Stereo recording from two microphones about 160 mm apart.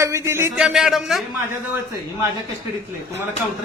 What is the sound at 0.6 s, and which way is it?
Speech, 5° right (ahead or behind).